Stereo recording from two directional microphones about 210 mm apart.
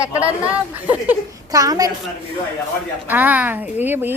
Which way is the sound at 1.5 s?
15° right (ahead or behind).